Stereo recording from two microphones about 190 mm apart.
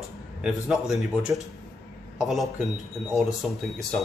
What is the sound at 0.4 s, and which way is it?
Speech, 5° right (ahead or behind).